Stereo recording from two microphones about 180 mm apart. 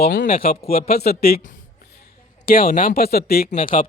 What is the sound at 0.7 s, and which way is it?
Speech, 55° left (ahead or behind).